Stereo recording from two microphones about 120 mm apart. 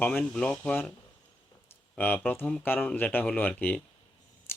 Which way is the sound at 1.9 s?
15° left (ahead or behind).